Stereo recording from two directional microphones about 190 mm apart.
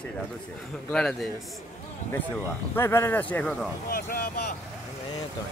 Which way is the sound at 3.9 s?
50° left (ahead or behind).